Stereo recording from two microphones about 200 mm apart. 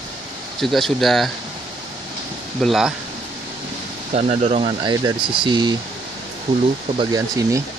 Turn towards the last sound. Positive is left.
turn(degrees=-20)  # may be behind; listen again after turning